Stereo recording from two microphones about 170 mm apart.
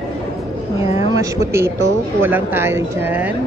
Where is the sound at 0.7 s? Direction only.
15° right (ahead or behind).